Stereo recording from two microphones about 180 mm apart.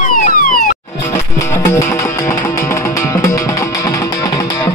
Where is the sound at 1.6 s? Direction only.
15° left (ahead or behind).